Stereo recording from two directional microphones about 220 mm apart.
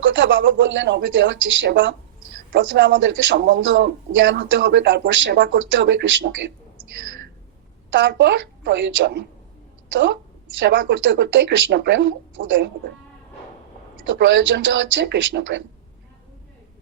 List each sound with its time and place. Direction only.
0.0 s a man's voice: 55° right (ahead or behind)
2.5 s a man's voice: 45° right (ahead or behind)
7.9 s a man's voice: 55° right (ahead or behind)
10.6 s a man's voice: 55° right (ahead or behind)
14.1 s a man's voice: 55° right (ahead or behind)